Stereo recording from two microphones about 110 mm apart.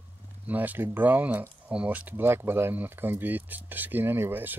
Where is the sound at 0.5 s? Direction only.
15° right (ahead or behind).